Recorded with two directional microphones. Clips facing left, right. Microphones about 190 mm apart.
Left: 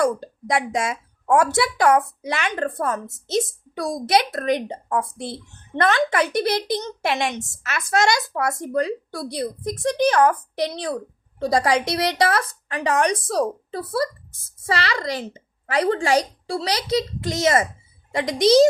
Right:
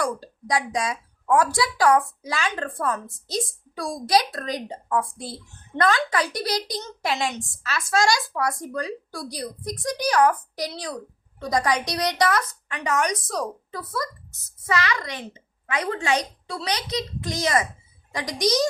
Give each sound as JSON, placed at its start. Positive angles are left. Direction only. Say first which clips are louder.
{"t": 0.0, "sound": "a woman's voice", "louder": "left 6 dB", "side_deg": 25}
{"t": 2.6, "sound": "speech", "louder": "left 3 dB", "side_deg": 40}
{"t": 3.2, "sound": "a woman's voice", "louder": "left 6 dB", "side_deg": 25}